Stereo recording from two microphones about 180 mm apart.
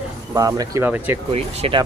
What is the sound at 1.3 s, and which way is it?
Speech, 30° right (ahead or behind).